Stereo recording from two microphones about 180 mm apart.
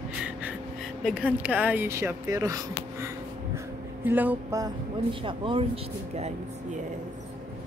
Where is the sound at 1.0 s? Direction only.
5° right (ahead or behind).